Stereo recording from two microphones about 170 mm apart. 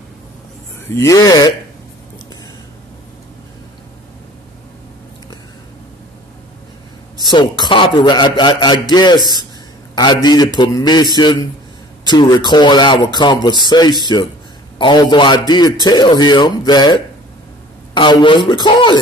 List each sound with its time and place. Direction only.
0.9 s speech: 20° left (ahead or behind)
7.2 s speech: 25° left (ahead or behind)